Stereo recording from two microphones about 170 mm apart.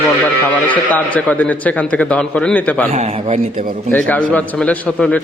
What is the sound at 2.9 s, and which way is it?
Speech, 40° right (ahead or behind).